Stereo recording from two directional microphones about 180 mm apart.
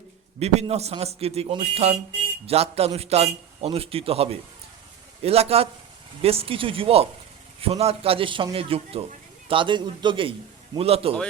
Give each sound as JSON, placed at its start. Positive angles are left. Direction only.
{"t": 0.3, "sound": "a man's voice", "side_deg": -35}